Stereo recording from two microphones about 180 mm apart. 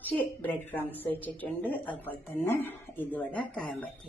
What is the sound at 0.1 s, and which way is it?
A woman's voice, 5° left (ahead or behind).